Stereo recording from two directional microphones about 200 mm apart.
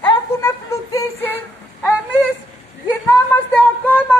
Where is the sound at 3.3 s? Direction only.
10° left (ahead or behind).